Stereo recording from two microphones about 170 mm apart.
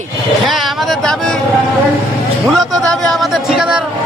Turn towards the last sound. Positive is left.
turn(degrees=-5)  # may be behind; listen again after turning